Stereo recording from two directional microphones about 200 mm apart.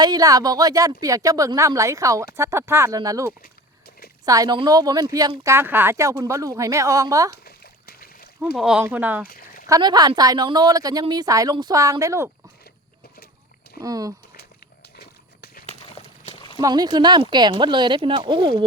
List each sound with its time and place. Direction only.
0.0 s speech: 20° right (ahead or behind)
7.4 s splash: 50° left (ahead or behind)
8.5 s speech: 5° right (ahead or behind)
9.2 s a sound: 45° left (ahead or behind)
9.6 s a woman's voice: 20° right (ahead or behind)
13.8 s speech: 15° right (ahead or behind)
14.9 s a sound: 50° left (ahead or behind)
15.8 s a sound: 30° left (ahead or behind)
16.6 s a woman's voice: 20° right (ahead or behind)